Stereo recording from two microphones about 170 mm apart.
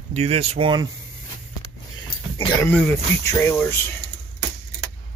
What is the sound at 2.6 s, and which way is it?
Speech, 10° left (ahead or behind).